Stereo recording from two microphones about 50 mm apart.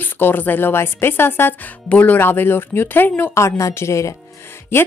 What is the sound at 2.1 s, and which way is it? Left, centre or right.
A woman's voice, left.